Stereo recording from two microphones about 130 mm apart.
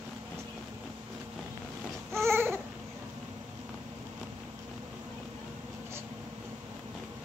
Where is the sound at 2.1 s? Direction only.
20° right (ahead or behind).